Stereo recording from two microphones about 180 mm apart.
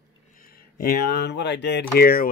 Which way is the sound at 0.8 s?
60° left (ahead or behind).